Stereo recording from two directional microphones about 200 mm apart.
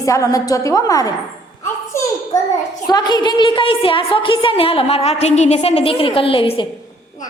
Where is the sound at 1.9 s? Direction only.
15° left (ahead or behind).